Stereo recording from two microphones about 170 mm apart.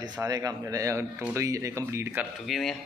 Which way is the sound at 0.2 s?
20° right (ahead or behind).